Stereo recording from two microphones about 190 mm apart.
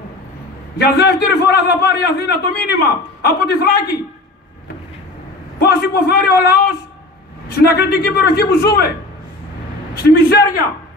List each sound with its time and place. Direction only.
0.7 s a man's voice: 60° left (ahead or behind)
5.6 s a man's voice: 55° left (ahead or behind)
9.9 s a man's voice: 55° left (ahead or behind)